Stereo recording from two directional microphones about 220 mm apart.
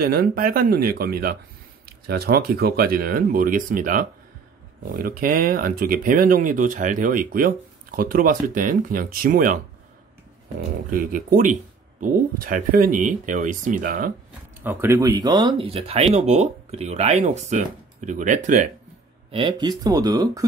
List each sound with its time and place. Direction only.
0.0 s speech: 40° right (ahead or behind)
10.9 s speech: 40° right (ahead or behind)
14.6 s speech: 10° right (ahead or behind); by 18.7 s 35° right (ahead or behind)
19.3 s speech: 25° right (ahead or behind)